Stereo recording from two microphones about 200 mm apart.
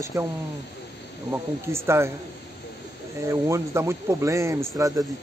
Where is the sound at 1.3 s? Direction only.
15° right (ahead or behind).